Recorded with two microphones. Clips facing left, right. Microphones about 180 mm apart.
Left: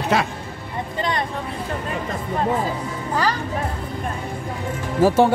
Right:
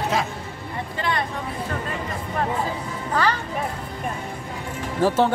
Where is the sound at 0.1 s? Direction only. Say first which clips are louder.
Left 5 dB; 70° left (ahead or behind).